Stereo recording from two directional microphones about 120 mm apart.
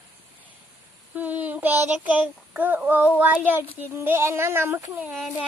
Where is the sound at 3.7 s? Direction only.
20° right (ahead or behind).